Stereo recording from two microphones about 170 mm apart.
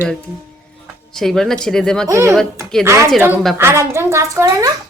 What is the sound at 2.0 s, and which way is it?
Speech, 15° right (ahead or behind).